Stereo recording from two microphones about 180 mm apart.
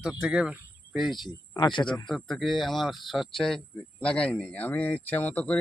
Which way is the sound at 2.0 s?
Centre (ahead or behind).